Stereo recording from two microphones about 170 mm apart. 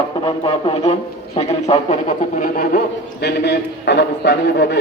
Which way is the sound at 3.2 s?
80° left.